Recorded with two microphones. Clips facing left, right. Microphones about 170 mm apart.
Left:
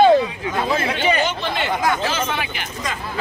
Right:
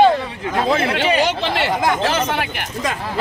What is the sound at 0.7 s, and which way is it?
Speech, 75° right (ahead or behind).